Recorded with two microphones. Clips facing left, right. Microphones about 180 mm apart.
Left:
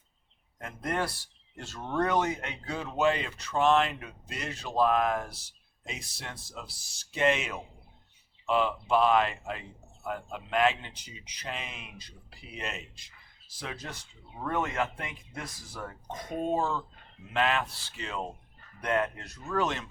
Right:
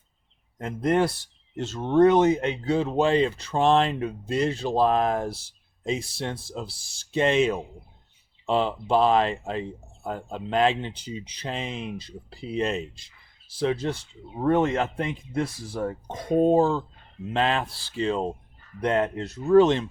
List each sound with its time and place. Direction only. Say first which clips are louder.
0.6 s speech: right 10 dB; 25° right (ahead or behind)